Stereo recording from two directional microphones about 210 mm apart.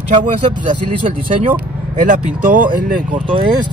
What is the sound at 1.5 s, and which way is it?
Speech, 40° right (ahead or behind).